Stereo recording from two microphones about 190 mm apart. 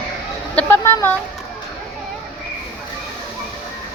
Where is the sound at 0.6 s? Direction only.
10° left (ahead or behind).